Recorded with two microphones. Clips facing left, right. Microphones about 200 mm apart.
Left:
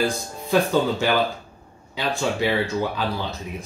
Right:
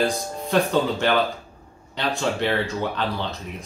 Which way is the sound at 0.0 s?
5° left (ahead or behind).